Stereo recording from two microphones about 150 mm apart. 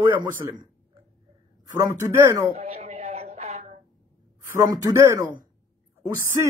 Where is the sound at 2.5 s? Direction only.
45° right (ahead or behind).